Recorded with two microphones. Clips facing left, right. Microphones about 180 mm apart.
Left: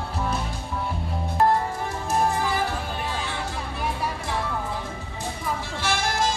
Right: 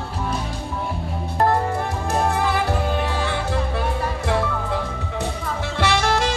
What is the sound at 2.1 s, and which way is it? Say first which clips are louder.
Music: right 2 dB; 65° right (ahead or behind).